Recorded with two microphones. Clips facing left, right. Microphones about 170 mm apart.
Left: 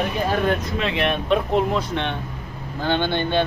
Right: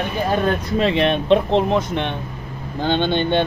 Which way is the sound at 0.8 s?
35° right (ahead or behind).